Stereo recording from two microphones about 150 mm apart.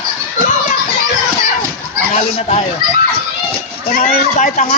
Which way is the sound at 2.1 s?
50° left (ahead or behind).